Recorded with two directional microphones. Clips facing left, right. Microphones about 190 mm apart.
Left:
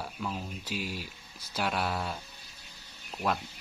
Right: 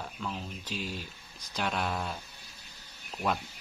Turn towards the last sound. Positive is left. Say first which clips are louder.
# even
turn(degrees=0)  # may be behind; listen again after turning